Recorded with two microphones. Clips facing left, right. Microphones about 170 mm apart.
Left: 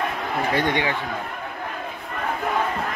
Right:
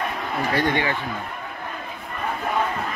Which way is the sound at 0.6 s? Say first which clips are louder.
Right 1 dB; 20° left (ahead or behind).